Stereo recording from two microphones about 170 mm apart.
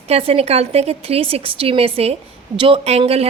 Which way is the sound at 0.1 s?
35° right (ahead or behind).